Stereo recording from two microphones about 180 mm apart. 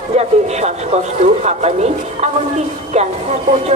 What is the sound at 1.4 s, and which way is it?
Speech, 35° right (ahead or behind).